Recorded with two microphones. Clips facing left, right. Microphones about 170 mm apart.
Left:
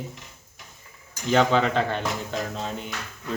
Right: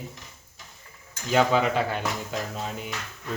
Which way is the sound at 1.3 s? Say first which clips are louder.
Left 1 dB; 5° right (ahead or behind).